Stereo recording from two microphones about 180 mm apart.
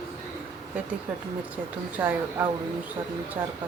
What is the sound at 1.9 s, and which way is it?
Speech, 15° right (ahead or behind).